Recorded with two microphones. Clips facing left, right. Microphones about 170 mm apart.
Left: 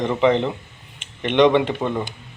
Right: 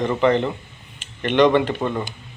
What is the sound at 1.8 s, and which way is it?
Speech, 10° left (ahead or behind).